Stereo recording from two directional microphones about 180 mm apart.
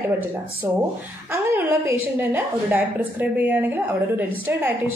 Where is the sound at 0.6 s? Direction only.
15° right (ahead or behind).